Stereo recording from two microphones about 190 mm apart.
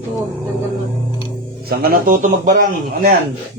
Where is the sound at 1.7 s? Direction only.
50° right (ahead or behind).